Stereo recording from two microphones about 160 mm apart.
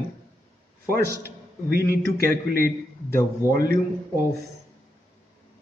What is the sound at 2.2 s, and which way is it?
A man's voice, 65° right (ahead or behind).